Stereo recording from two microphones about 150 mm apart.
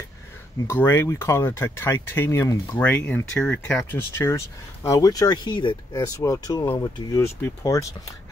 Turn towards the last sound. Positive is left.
turn(degrees=20)  # may be behind; listen again after turning